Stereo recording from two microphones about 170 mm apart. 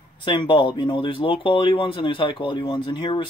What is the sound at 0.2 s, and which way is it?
Speech, 30° left (ahead or behind).